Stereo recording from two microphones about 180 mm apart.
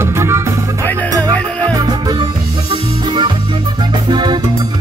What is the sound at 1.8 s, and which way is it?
Music, 20° right (ahead or behind).